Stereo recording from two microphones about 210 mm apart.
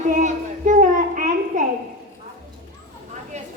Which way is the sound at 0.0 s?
35° right (ahead or behind).